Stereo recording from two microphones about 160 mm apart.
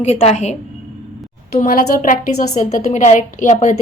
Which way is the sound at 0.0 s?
40° left (ahead or behind).